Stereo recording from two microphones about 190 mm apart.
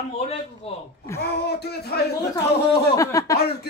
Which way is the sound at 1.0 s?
15° left (ahead or behind).